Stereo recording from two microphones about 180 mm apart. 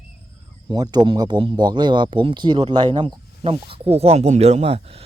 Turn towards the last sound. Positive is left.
turn(degrees=-35)  # may be behind; listen again after turning